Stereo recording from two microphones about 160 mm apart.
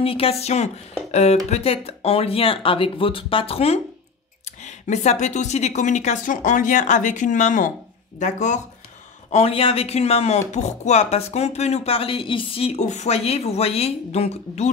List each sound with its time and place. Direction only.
0.0 s speech: 35° left (ahead or behind)
9.3 s speech: 40° left (ahead or behind)